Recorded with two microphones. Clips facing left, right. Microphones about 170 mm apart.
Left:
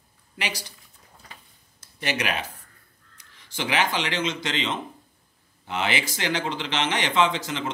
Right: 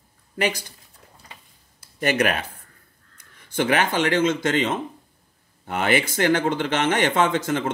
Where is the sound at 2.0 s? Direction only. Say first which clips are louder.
Right 6 dB; 50° right (ahead or behind).